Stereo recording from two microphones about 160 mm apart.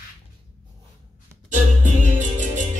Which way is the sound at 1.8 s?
50° right (ahead or behind).